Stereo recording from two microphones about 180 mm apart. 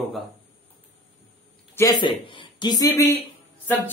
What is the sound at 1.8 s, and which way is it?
Speech, 25° left (ahead or behind).